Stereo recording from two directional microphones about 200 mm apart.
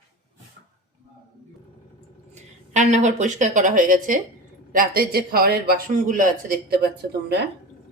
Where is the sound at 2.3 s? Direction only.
35° right (ahead or behind); by 7.4 s 55° right (ahead or behind).